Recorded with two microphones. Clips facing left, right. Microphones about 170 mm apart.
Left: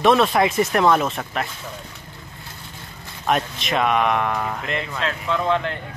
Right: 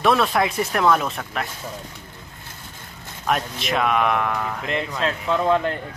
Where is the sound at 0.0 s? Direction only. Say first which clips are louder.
Left 3 dB; centre (ahead or behind).